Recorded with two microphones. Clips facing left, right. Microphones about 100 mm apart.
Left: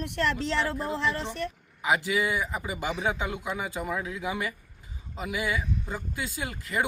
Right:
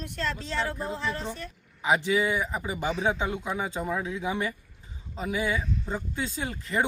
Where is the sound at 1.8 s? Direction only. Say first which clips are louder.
Right 2 dB; 20° right (ahead or behind).